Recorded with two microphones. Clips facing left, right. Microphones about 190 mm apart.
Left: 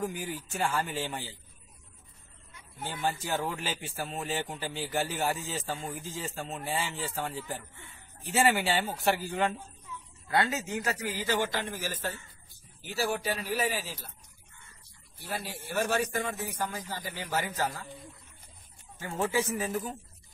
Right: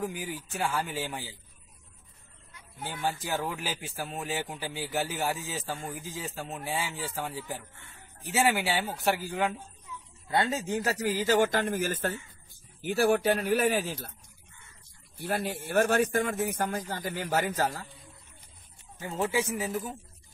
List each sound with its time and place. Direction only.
0.0 s speech: centre (ahead or behind)
2.9 s speech: centre (ahead or behind)
10.5 s speech: 35° right (ahead or behind); by 13.9 s 55° right (ahead or behind)
15.1 s speech: 50° right (ahead or behind)
19.3 s a man's voice: 10° right (ahead or behind)
19.7 s speech: centre (ahead or behind)